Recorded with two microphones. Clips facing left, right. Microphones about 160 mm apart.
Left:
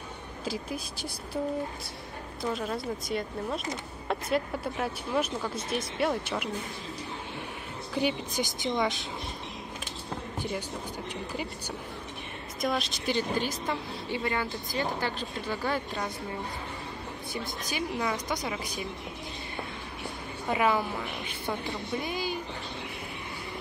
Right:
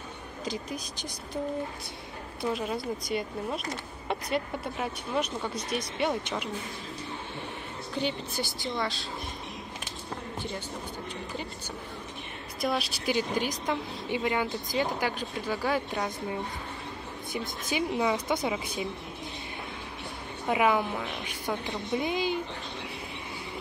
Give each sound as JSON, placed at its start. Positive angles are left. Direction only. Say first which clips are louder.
{"t": 0.5, "sound": "a woman's voice", "louder": "left 1 dB", "side_deg": 5}
{"t": 2.5, "sound": "speech", "louder": "even", "side_deg": 0}
{"t": 7.9, "sound": "a woman's voice", "louder": "left 3 dB", "side_deg": 10}
{"t": 12.5, "sound": "a woman's voice", "louder": "even", "side_deg": -5}
{"t": 17.3, "sound": "a woman's voice", "louder": "right 4 dB", "side_deg": -20}
{"t": 17.9, "sound": "a woman's voice", "louder": "right 4 dB", "side_deg": -10}
{"t": 20.4, "sound": "a woman's voice", "louder": "right 1 dB", "side_deg": -15}